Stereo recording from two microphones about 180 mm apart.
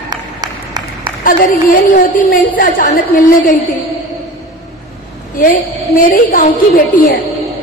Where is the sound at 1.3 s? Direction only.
50° left (ahead or behind).